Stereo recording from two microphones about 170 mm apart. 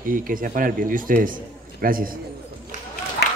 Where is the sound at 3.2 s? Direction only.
75° left (ahead or behind).